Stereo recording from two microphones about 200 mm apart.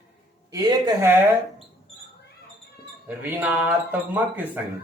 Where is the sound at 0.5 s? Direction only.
20° right (ahead or behind).